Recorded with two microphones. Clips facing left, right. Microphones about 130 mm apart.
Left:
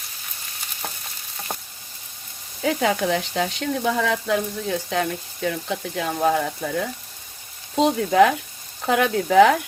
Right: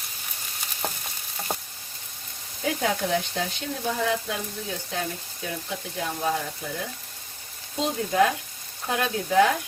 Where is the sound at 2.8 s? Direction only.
90° left.